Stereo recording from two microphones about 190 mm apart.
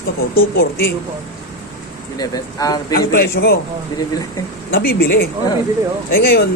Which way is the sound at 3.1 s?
55° left (ahead or behind).